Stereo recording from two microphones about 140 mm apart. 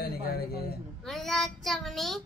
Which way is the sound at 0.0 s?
90° left.